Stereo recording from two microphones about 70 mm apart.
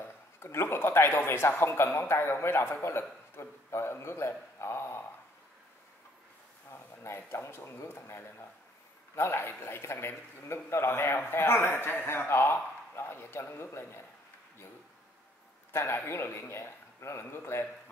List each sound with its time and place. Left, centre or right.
0.0 s speech: left
6.7 s a man's voice: left
15.7 s a man's voice: left